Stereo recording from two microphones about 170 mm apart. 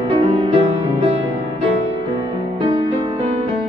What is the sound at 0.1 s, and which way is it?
Music, 35° right (ahead or behind).